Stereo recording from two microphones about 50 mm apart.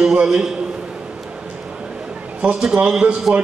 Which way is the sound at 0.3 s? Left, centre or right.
Centre.